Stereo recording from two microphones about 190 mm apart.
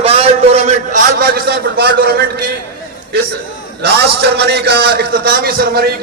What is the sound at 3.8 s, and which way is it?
A man's voice, 60° right (ahead or behind).